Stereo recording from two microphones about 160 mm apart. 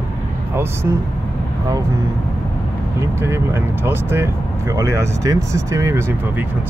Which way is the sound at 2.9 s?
15° right (ahead or behind).